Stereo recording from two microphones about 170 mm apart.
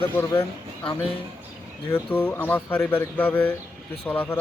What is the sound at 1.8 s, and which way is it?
Speech, 15° left (ahead or behind).